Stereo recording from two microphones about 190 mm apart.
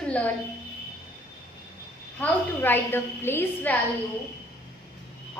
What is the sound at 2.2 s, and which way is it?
A woman's voice, 10° left (ahead or behind).